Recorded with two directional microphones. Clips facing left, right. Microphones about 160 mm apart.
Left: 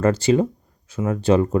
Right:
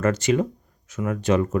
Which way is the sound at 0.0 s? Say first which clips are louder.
Left 3 dB; 30° left (ahead or behind).